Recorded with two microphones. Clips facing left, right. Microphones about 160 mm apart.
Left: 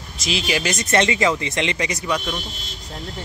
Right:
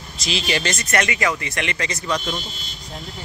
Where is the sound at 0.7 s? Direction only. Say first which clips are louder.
Left 3 dB; 25° left (ahead or behind); by 2.4 s 5° left (ahead or behind).